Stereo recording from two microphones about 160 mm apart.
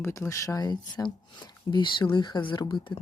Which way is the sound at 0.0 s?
15° left (ahead or behind).